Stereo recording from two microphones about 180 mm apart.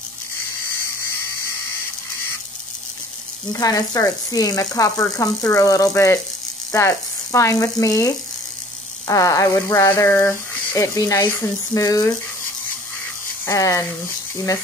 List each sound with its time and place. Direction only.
3.5 s speech: 20° left (ahead or behind)
13.5 s speech: 15° left (ahead or behind)